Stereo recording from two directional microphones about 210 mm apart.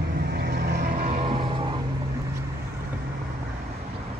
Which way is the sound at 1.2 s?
25° right (ahead or behind).